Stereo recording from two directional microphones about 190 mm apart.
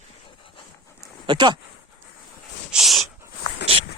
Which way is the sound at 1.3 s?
25° right (ahead or behind).